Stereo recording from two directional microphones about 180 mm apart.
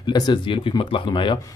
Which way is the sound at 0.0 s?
25° left (ahead or behind).